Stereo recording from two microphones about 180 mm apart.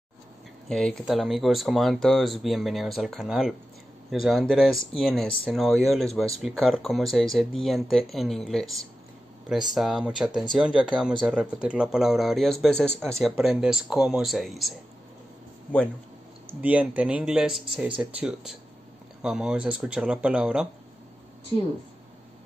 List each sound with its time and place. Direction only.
0.7 s speech: 5° left (ahead or behind)
16.4 s speech: 10° right (ahead or behind)